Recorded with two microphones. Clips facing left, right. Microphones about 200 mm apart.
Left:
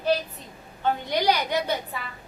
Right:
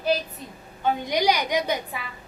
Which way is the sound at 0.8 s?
10° right (ahead or behind).